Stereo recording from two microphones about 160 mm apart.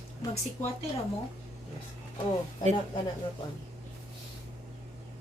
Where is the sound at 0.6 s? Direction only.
50° left (ahead or behind).